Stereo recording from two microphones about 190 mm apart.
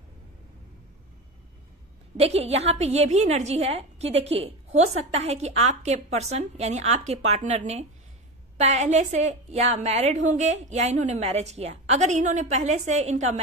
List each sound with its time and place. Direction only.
2.1 s a woman's voice: 35° right (ahead or behind)